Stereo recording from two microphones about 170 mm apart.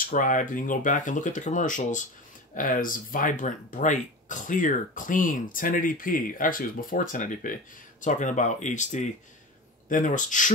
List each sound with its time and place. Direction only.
0.0 s speech: 50° left (ahead or behind)